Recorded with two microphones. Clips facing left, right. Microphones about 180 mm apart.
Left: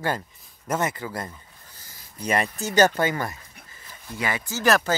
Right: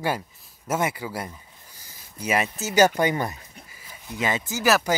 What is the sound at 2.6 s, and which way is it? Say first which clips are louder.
Speech: right 1 dB; 10° right (ahead or behind).